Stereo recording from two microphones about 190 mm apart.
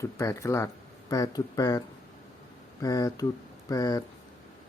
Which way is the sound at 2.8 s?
20° left (ahead or behind).